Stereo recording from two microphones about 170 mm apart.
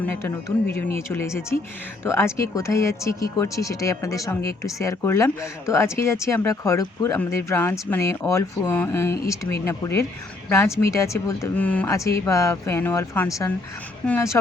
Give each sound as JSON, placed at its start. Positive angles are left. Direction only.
{"t": 0.0, "sound": "speech", "side_deg": 15}